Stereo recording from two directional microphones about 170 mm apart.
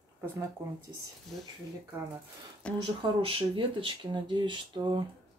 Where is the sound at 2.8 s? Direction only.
30° right (ahead or behind).